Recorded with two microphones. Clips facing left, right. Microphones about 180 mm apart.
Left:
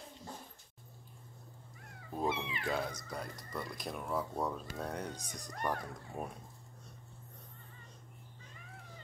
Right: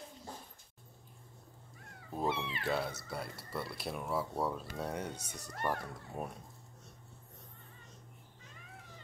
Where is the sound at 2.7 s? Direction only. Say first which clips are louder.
Right 2 dB; 5° right (ahead or behind).